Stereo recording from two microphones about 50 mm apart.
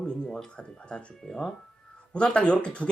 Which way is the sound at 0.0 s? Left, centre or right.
Centre.